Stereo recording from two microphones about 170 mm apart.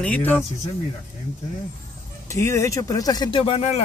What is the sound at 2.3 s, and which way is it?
Speech, 15° left (ahead or behind).